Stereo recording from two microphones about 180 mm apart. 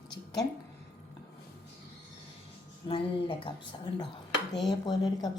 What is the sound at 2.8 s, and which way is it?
Speech, 30° left (ahead or behind).